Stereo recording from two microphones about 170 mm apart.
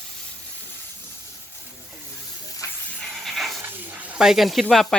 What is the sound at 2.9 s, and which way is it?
Hiss, 5° left (ahead or behind).